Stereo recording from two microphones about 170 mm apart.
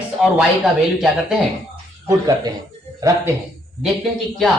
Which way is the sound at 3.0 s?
20° right (ahead or behind).